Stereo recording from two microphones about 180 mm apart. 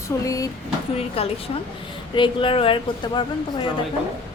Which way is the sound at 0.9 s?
35° left (ahead or behind).